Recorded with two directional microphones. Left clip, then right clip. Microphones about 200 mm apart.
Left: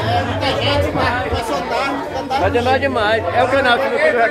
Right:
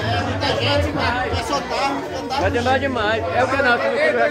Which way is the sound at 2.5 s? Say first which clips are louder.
Left 3 dB; 15° left (ahead or behind).